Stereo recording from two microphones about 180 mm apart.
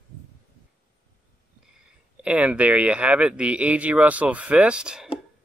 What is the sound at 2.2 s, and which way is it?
Speech, 5° right (ahead or behind).